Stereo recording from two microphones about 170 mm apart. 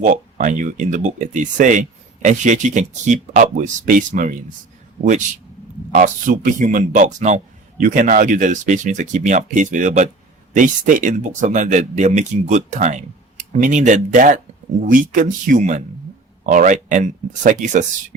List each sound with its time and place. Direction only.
0.0 s speech: 50° right (ahead or behind)
5.9 s speech: 50° right (ahead or behind)